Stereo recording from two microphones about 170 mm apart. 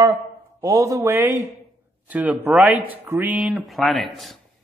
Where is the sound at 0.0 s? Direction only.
25° right (ahead or behind); by 4.4 s centre (ahead or behind).